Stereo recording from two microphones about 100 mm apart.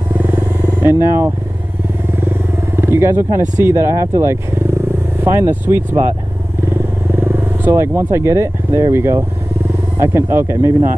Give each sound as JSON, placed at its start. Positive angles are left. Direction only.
{"t": 0.2, "sound": "wild animals", "side_deg": -20}
{"t": 2.1, "sound": "speech", "side_deg": -25}
{"t": 7.2, "sound": "speech", "side_deg": -25}